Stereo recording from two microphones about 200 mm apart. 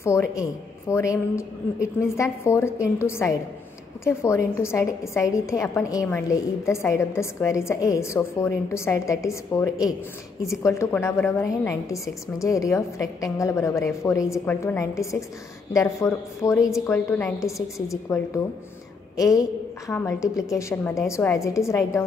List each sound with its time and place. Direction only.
0.0 s a woman's voice: 15° left (ahead or behind)
16.5 s a woman's voice: centre (ahead or behind)
16.8 s a woman's voice: 15° left (ahead or behind)